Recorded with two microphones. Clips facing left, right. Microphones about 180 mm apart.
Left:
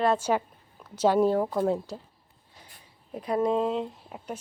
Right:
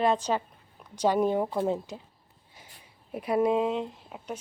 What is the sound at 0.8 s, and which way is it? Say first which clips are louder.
Speech: left 3 dB; 15° right (ahead or behind).